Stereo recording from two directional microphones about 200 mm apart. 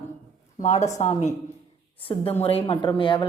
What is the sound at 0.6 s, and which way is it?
A woman's voice, 35° left (ahead or behind).